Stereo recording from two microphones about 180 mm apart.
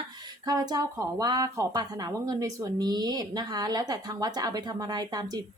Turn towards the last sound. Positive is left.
turn(degrees=-20)  # may be behind; listen again after turning